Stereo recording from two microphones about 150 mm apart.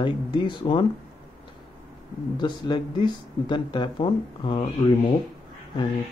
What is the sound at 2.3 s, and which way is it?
Speech, 30° left (ahead or behind).